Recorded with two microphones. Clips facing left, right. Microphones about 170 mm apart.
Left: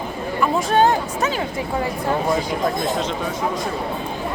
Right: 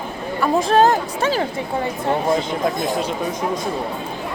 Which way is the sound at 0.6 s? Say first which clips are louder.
Right 3 dB; 35° right (ahead or behind).